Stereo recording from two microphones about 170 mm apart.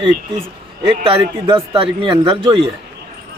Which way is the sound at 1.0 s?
35° right (ahead or behind).